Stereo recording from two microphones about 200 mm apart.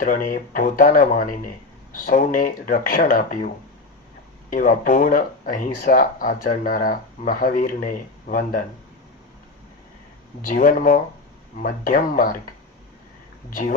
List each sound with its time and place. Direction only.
0.0 s speech: 40° left (ahead or behind)
10.4 s speech: 40° left (ahead or behind)
13.5 s speech: 45° left (ahead or behind)